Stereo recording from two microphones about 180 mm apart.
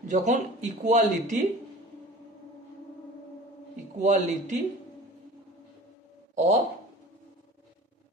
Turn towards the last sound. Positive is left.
turn(degrees=-40)  # may be behind; listen again after turning